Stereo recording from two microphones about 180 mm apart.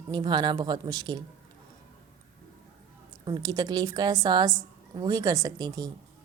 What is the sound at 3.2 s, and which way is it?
A woman's voice, 25° right (ahead or behind).